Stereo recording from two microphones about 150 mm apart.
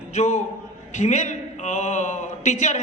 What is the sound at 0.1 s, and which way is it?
A man's voice, 50° left (ahead or behind).